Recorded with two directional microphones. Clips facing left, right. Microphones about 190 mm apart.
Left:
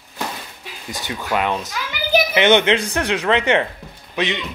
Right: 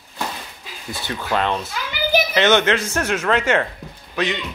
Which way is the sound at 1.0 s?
10° left (ahead or behind).